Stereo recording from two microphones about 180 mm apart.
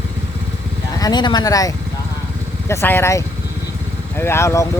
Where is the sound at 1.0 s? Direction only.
20° left (ahead or behind).